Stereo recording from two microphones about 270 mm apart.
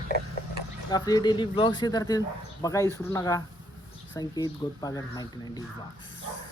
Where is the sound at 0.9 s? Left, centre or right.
Centre.